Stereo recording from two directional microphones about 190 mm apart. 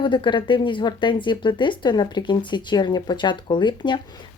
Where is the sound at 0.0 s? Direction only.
25° left (ahead or behind).